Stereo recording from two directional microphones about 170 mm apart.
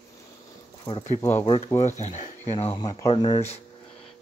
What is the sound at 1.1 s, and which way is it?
Speech, 15° left (ahead or behind).